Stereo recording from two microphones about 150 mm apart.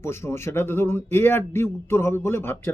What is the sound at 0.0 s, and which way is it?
Speech, 15° left (ahead or behind).